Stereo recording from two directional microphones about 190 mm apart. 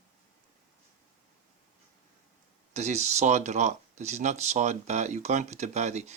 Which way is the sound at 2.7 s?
35° right (ahead or behind).